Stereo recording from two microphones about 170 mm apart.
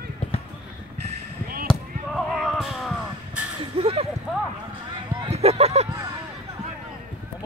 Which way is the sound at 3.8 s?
35° right (ahead or behind).